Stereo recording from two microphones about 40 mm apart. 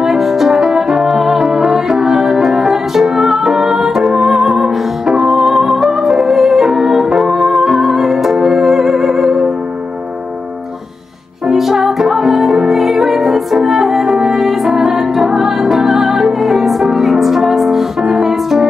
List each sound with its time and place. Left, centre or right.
0.0 s music: centre
11.4 s music: centre